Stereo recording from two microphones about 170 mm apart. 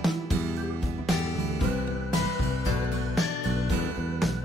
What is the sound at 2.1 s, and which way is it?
Music, centre (ahead or behind).